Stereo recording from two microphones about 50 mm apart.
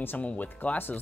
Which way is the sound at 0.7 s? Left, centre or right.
Left.